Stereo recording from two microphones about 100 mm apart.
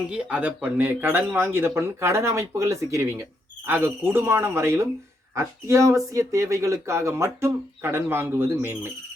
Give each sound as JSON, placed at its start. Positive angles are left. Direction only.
{"t": 0.1, "sound": "speech", "side_deg": -10}